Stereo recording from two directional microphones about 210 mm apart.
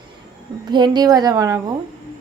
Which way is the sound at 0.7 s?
20° right (ahead or behind).